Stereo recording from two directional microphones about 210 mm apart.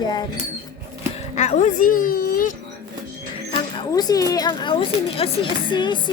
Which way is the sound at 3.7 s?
20° left (ahead or behind).